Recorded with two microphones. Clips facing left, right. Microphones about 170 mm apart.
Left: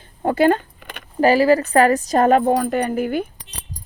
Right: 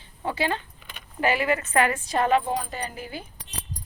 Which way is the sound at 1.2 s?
35° left (ahead or behind).